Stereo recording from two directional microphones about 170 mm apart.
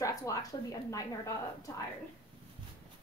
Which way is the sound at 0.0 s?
20° left (ahead or behind).